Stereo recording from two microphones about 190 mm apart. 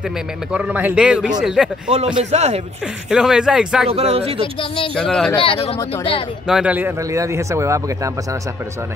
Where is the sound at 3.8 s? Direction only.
35° right (ahead or behind).